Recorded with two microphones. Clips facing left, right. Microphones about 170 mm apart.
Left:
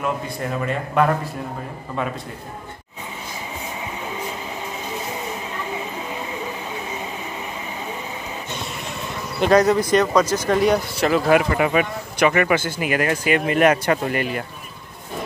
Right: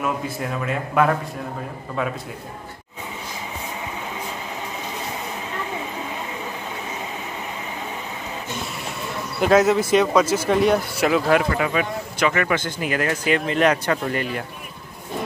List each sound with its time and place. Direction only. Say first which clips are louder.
0.0 s a man's voice: even; centre (ahead or behind)
9.4 s a man's voice: left 1 dB; 5° right (ahead or behind)
12.2 s speech: left 4 dB; 15° left (ahead or behind)